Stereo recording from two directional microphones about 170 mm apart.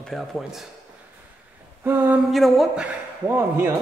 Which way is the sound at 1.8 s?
10° right (ahead or behind).